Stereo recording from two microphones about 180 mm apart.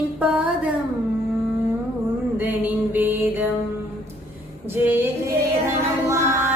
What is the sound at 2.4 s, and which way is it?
Music, 10° right (ahead or behind).